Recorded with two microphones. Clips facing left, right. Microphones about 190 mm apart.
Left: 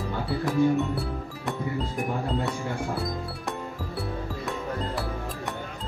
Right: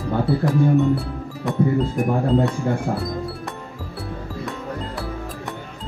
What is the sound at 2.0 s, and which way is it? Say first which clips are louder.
Speech: right 10 dB; 40° right (ahead or behind).